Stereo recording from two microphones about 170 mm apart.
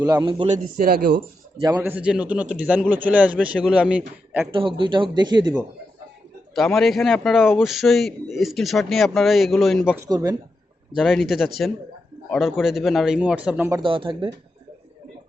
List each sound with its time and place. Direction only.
0.0 s speech: 25° right (ahead or behind)
0.5 s a man's voice: 55° right (ahead or behind)
1.6 s speech: 20° right (ahead or behind)
1.9 s a man's voice: 5° right (ahead or behind)
4.5 s speech: 30° right (ahead or behind)
6.7 s a man's voice: centre (ahead or behind)
10.0 s speech: 20° right (ahead or behind)
10.9 s a man's voice: centre (ahead or behind)
13.7 s speech: 25° right (ahead or behind)